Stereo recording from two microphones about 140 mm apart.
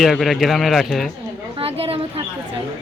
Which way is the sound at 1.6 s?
45° right (ahead or behind).